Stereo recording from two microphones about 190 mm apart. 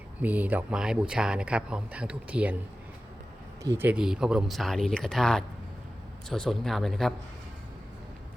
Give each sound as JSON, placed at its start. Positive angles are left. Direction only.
{"t": 0.2, "sound": "speech", "side_deg": -10}
{"t": 3.6, "sound": "speech", "side_deg": -15}